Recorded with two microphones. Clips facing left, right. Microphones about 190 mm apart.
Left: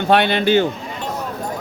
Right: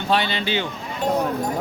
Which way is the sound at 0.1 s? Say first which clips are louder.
Left 7 dB; 60° left (ahead or behind).